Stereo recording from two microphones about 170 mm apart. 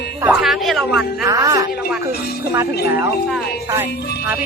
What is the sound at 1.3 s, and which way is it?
Speech, 20° right (ahead or behind).